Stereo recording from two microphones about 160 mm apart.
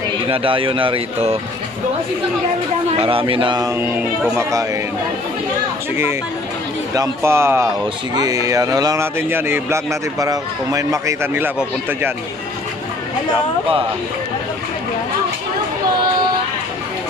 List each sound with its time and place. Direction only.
0.3 s speech: 35° right (ahead or behind)
3.0 s speech: 35° right (ahead or behind)
3.8 s speech: 10° right (ahead or behind)
4.4 s speech: 20° right (ahead or behind)
7.0 s speech: 15° right (ahead or behind)